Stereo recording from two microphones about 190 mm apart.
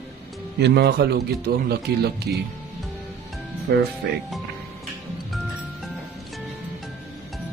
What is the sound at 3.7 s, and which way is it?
Speech, 65° right (ahead or behind).